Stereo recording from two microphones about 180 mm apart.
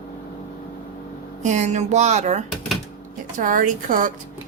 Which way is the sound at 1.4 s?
40° right (ahead or behind).